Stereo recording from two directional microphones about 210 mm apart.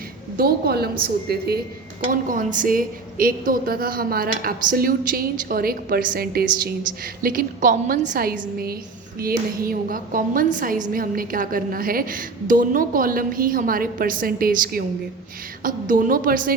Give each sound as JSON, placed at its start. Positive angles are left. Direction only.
{"t": 0.3, "sound": "a woman's voice", "side_deg": -45}